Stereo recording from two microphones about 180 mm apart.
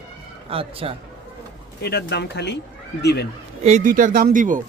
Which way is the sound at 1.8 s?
65° left (ahead or behind).